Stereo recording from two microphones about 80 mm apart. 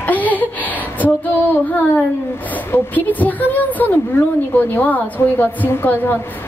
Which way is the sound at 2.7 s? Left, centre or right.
Left.